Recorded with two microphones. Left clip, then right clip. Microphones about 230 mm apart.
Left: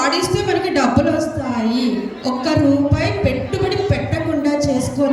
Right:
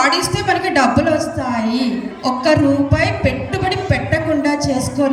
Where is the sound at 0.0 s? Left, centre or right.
Centre.